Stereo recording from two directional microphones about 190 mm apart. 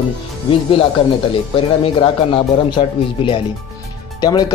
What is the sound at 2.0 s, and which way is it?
Speech, 25° left (ahead or behind).